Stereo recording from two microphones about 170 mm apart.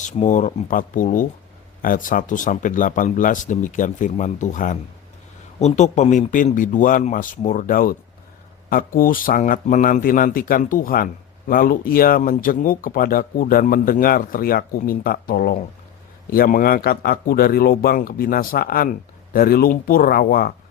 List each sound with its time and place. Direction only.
0.0 s speech: 45° left (ahead or behind); by 20.5 s 60° left (ahead or behind)